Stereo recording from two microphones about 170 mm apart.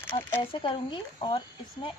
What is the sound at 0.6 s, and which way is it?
Speech, 30° left (ahead or behind).